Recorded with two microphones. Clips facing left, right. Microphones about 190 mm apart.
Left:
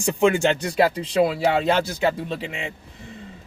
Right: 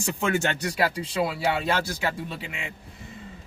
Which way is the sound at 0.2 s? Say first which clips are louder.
Left 7 dB; 20° left (ahead or behind).